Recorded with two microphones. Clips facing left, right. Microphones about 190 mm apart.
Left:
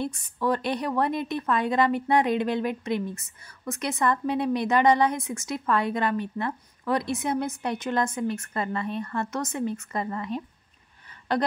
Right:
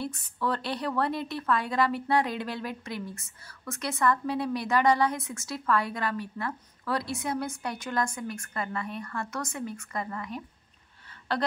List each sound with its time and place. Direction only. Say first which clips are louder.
0.0 s a woman's voice: left 4 dB; 15° left (ahead or behind)